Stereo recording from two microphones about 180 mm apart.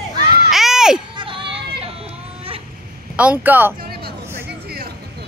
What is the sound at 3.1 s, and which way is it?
Speech, 10° right (ahead or behind).